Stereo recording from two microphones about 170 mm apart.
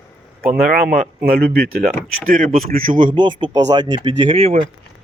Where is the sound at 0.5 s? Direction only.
55° right (ahead or behind).